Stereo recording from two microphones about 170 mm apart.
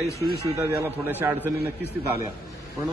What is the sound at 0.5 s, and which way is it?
A man's voice, 15° right (ahead or behind).